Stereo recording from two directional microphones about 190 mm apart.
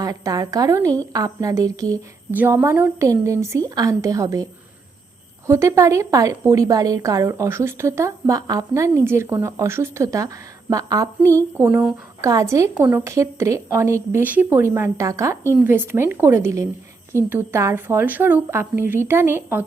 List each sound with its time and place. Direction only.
0.0 s a woman's voice: 20° right (ahead or behind)
5.5 s a woman's voice: 15° right (ahead or behind)